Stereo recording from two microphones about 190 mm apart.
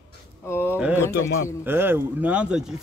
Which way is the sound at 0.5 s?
10° left (ahead or behind).